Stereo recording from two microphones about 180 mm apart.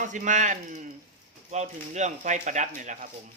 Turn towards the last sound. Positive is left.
turn(degrees=-45)  # may be behind; listen again after turning